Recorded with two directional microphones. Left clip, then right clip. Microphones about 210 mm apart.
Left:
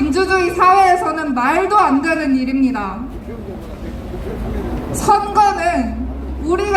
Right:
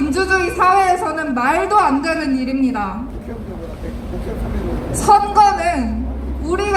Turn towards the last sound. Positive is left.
turn(degrees=15)  # may be behind; listen again after turning